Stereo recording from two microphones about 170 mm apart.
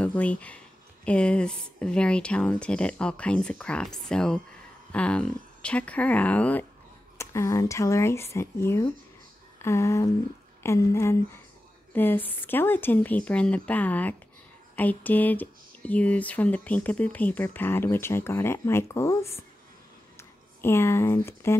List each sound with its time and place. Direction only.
0.0 s speech: 10° left (ahead or behind)
9.6 s a sound: 15° left (ahead or behind)
10.6 s speech: 15° left (ahead or behind)